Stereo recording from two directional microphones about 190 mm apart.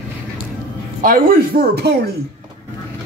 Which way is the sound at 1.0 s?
50° right (ahead or behind).